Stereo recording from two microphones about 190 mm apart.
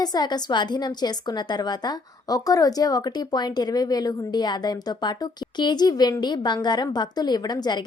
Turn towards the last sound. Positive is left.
turn(degrees=20)  # may be behind; listen again after turning